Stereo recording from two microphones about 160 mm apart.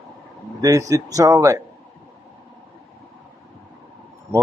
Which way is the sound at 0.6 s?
20° right (ahead or behind).